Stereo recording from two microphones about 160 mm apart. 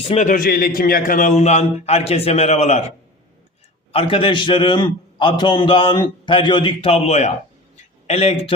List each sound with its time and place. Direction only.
0.0 s a man's voice: 45° left (ahead or behind)
3.9 s a man's voice: 35° left (ahead or behind)